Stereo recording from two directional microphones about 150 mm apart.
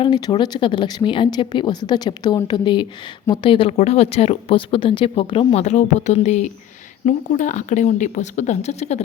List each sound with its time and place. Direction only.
0.0 s a woman's voice: 30° left (ahead or behind)
5.6 s speech: 50° left (ahead or behind)